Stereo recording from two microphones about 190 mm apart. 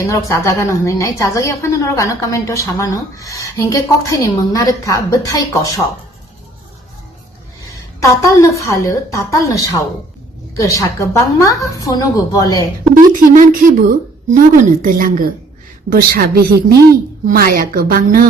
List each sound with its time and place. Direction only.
0.1 s a woman's voice: 15° left (ahead or behind)
8.0 s a woman's voice: 15° left (ahead or behind)
13.3 s a woman's voice: 45° right (ahead or behind)